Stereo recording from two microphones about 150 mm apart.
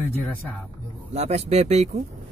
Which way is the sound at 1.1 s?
50° right (ahead or behind).